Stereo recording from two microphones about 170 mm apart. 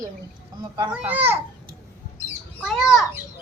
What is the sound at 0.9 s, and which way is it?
Speech, 10° right (ahead or behind).